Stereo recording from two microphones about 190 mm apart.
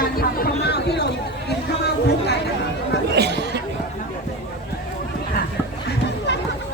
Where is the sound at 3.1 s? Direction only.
60° right (ahead or behind).